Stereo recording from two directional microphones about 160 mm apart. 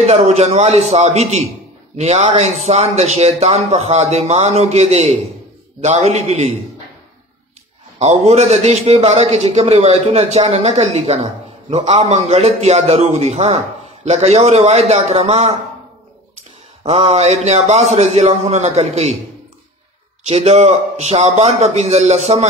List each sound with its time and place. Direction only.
0.0 s a man's voice: 40° right (ahead or behind)
8.0 s a man's voice: 45° right (ahead or behind)
16.8 s a man's voice: 45° right (ahead or behind)
20.2 s a man's voice: 40° right (ahead or behind)